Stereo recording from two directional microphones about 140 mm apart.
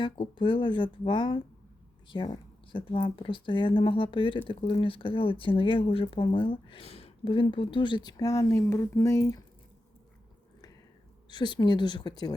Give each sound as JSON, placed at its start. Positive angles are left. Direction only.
{"t": 0.0, "sound": "speech", "side_deg": 35}
{"t": 11.3, "sound": "speech", "side_deg": 30}